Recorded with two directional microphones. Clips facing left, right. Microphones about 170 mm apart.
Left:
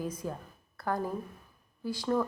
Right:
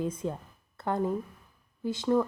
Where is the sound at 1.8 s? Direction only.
20° right (ahead or behind).